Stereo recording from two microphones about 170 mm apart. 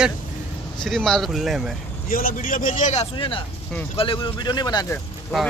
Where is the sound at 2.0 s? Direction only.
55° left (ahead or behind).